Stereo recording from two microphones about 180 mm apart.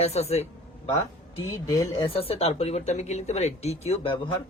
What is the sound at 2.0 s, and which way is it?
Speech, 35° left (ahead or behind).